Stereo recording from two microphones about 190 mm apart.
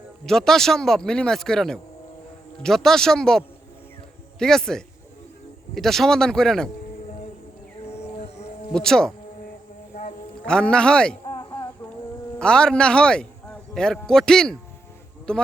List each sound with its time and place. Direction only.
0.3 s speech: centre (ahead or behind)
8.7 s speech: 5° left (ahead or behind)
9.9 s a sound: 40° left (ahead or behind)
10.4 s speech: 5° left (ahead or behind)
12.4 s a man's voice: 5° left (ahead or behind)